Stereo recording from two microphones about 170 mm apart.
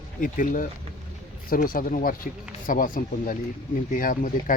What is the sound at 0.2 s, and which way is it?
Speech, 50° left (ahead or behind).